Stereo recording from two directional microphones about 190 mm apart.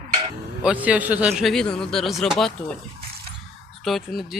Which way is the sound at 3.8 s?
Centre (ahead or behind).